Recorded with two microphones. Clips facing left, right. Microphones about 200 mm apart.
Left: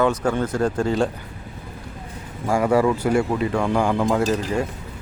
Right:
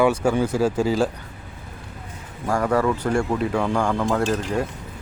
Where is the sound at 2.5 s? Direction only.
10° left (ahead or behind).